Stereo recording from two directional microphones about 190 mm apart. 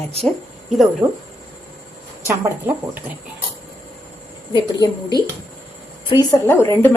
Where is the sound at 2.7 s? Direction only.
10° right (ahead or behind).